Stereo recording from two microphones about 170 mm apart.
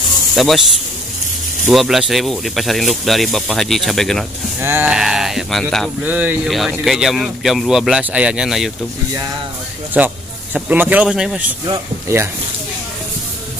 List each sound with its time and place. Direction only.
0.4 s speech: centre (ahead or behind)
1.7 s speech: centre (ahead or behind)
4.6 s speech: 10° right (ahead or behind)
6.0 s speech: 10° right (ahead or behind)
9.9 s speech: 10° right (ahead or behind)
11.6 s speech: 20° right (ahead or behind)